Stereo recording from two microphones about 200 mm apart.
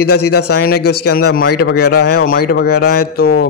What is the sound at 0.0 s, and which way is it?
Speech, 55° left (ahead or behind).